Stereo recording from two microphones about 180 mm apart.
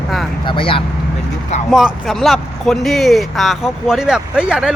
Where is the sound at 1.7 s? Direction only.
Centre (ahead or behind).